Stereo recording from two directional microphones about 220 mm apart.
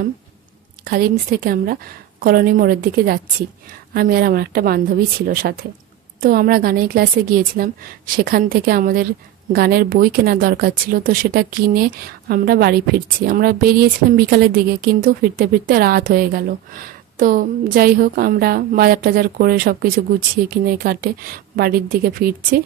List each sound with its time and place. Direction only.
0.8 s a woman's voice: 45° right (ahead or behind)